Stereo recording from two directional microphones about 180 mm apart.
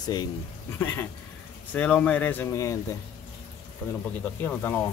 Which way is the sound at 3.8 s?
5° left (ahead or behind).